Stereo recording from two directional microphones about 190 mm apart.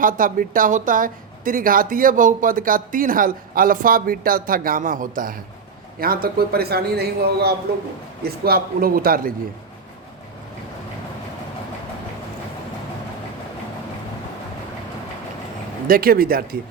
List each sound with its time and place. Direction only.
0.0 s a woman's voice: 45° right (ahead or behind)
15.9 s a woman's voice: 50° right (ahead or behind)